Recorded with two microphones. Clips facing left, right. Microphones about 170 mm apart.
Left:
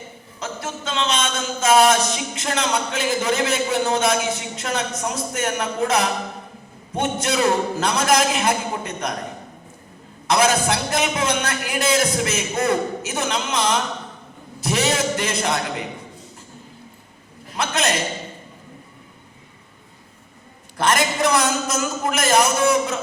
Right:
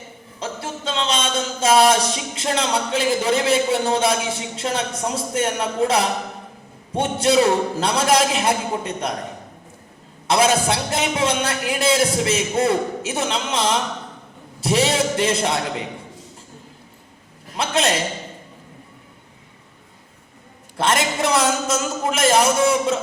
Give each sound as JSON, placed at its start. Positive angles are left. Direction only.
{"t": 0.3, "sound": "a man's voice", "side_deg": -30}
{"t": 10.2, "sound": "a man's voice", "side_deg": -30}
{"t": 14.6, "sound": "a sound", "side_deg": -30}
{"t": 17.6, "sound": "a man's voice", "side_deg": -30}
{"t": 20.7, "sound": "a man's voice", "side_deg": -25}